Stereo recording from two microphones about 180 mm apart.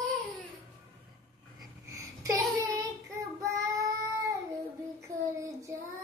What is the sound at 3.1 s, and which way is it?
Child singing, 15° right (ahead or behind).